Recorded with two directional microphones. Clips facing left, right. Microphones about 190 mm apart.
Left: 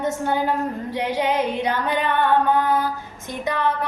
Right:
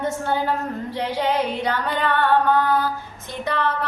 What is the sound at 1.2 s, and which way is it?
Female singing, 15° left (ahead or behind).